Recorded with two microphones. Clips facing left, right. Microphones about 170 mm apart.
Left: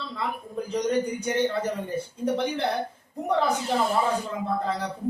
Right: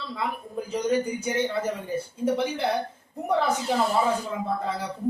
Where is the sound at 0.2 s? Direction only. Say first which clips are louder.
Even; 5° right (ahead or behind).